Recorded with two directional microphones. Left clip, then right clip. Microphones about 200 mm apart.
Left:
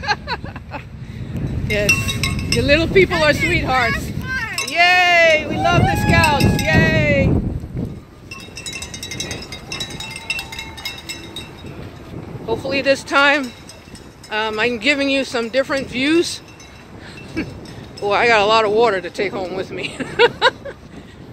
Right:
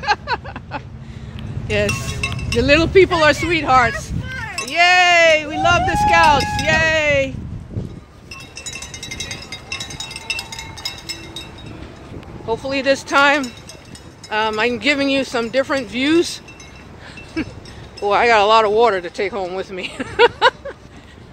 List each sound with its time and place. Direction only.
0.0 s vehicle: 10° right (ahead or behind)
2.6 s speech: 15° right (ahead or behind)
8.5 s a sound: 20° left (ahead or behind)
10.2 s a sound: 30° left (ahead or behind)
12.4 s speech: centre (ahead or behind)
17.4 s speech: 5° right (ahead or behind)